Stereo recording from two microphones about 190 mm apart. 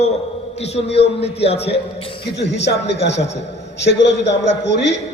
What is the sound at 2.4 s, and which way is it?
A man's voice, 65° left (ahead or behind).